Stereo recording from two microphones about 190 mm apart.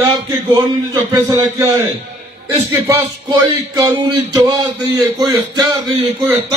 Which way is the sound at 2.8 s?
20° right (ahead or behind).